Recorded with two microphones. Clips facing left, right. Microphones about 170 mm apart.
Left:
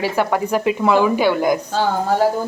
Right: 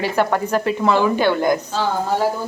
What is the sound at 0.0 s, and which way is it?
Speech, 10° left (ahead or behind).